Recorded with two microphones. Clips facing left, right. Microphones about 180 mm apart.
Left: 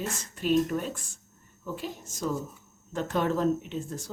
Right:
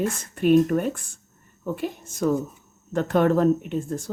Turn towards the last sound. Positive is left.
turn(degrees=-55)  # may be behind; listen again after turning